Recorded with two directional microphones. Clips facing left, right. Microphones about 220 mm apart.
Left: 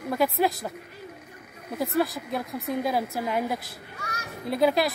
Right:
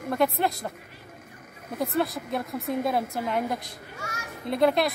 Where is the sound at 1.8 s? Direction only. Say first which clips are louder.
Left 1 dB; centre (ahead or behind).